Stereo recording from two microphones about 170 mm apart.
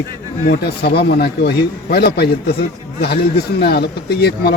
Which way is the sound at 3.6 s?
70° left (ahead or behind).